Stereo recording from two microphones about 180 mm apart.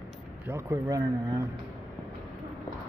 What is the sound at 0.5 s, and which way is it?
Speech, 15° right (ahead or behind).